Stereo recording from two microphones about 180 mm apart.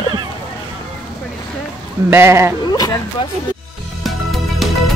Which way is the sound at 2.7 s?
20° left (ahead or behind).